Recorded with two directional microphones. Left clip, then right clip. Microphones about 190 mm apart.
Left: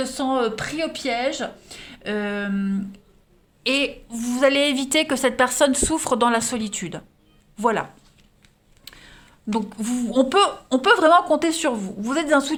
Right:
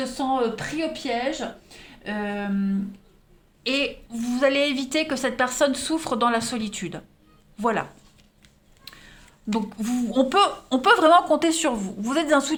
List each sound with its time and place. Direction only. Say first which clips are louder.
0.0 s speech: left 2 dB; 60° left (ahead or behind)
3.6 s a woman's voice: left 3 dB; 25° left (ahead or behind)